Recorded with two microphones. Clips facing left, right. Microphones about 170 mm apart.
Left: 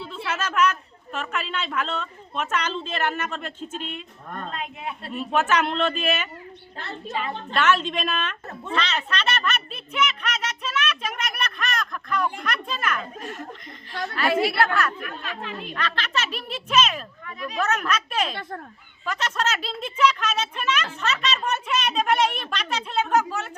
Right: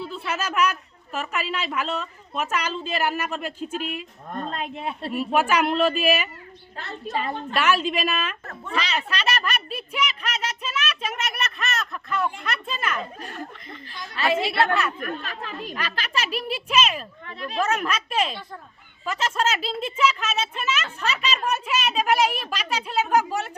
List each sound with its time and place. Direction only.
0.3 s speech: 10° right (ahead or behind)
4.5 s speech: 35° right (ahead or behind)
5.1 s speech: 10° right (ahead or behind)
7.1 s speech: 40° right (ahead or behind)
7.5 s speech: 5° right (ahead or behind)
14.2 s a woman's voice: 25° right (ahead or behind)
15.0 s speech: 40° right (ahead or behind)
15.7 s speech: 10° right (ahead or behind)
17.2 s a woman's voice: 30° right (ahead or behind)
17.6 s speech: 10° right (ahead or behind)